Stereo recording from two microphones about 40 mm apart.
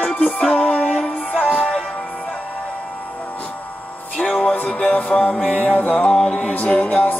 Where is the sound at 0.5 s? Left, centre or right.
Left.